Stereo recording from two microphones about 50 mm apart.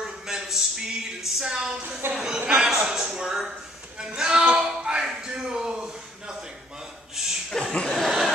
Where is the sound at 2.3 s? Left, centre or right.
Right.